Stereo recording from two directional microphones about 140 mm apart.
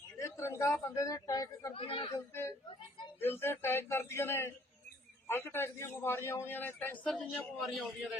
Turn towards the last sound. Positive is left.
turn(degrees=0)  # may be behind; listen again after turning